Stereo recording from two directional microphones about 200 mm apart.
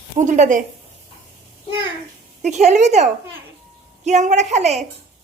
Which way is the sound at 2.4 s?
35° right (ahead or behind).